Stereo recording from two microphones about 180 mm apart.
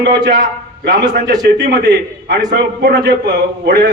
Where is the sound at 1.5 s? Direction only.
65° right (ahead or behind).